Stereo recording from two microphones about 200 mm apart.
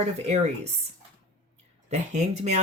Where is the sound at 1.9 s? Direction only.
35° right (ahead or behind).